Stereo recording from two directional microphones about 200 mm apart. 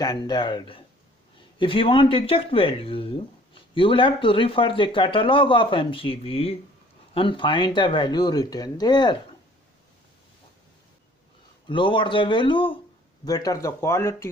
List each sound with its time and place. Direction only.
0.0 s speech: 20° left (ahead or behind)
11.7 s speech: 25° left (ahead or behind)